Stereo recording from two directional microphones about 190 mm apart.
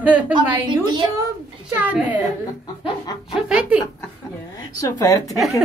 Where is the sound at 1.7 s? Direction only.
10° right (ahead or behind).